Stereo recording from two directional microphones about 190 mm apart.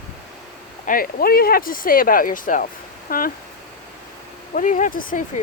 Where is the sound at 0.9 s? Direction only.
50° left (ahead or behind).